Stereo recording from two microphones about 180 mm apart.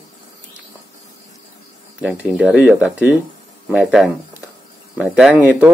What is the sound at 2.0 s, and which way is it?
Speech, 5° right (ahead or behind).